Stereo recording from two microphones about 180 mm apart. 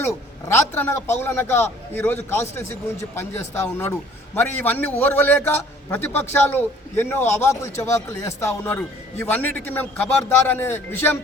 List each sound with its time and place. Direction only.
0.0 s speech: 15° left (ahead or behind)